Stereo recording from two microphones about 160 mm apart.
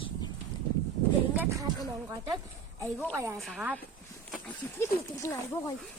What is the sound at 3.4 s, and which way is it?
Speech, centre (ahead or behind).